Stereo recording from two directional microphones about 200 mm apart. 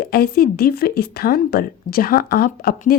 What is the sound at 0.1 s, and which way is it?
A woman's voice, 50° left (ahead or behind).